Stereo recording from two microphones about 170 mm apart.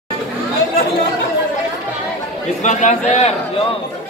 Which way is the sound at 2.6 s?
45° left (ahead or behind).